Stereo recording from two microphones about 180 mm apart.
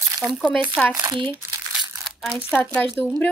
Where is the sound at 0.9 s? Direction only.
25° right (ahead or behind).